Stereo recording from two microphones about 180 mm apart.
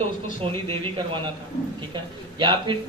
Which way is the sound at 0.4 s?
30° right (ahead or behind).